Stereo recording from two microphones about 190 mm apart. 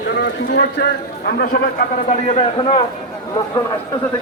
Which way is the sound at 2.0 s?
30° left (ahead or behind).